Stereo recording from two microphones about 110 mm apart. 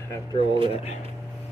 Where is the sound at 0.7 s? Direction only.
75° left (ahead or behind).